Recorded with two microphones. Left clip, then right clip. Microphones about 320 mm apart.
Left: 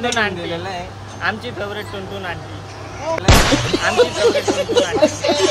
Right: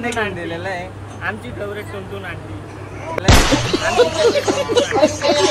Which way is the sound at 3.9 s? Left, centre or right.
Centre.